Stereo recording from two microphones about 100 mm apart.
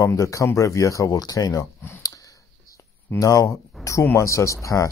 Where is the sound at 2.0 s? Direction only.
35° left (ahead or behind).